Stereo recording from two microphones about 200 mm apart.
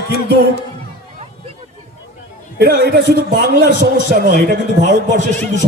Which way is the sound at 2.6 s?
50° right (ahead or behind).